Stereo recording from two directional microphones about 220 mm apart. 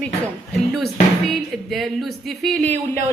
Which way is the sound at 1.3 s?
Centre (ahead or behind).